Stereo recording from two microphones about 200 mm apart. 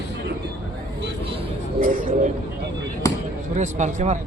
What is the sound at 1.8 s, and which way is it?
Speech, 45° right (ahead or behind).